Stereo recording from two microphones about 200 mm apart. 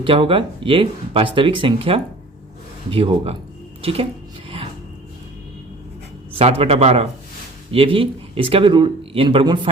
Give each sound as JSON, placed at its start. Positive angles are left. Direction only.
{"t": 0.0, "sound": "speech", "side_deg": -25}
{"t": 6.4, "sound": "speech", "side_deg": -30}